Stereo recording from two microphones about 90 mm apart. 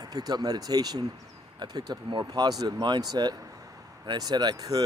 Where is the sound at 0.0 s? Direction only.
45° right (ahead or behind).